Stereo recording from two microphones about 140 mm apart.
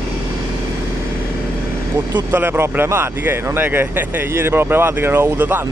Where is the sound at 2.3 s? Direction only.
15° right (ahead or behind).